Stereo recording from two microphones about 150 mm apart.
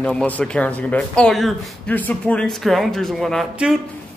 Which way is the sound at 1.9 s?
10° left (ahead or behind).